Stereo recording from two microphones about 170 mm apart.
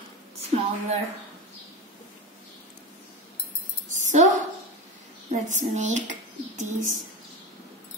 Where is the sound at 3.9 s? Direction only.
45° right (ahead or behind).